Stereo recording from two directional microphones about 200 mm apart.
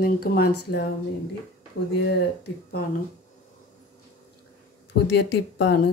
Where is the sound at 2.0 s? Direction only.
55° left (ahead or behind).